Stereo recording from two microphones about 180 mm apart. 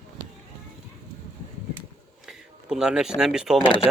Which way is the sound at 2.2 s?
5° right (ahead or behind).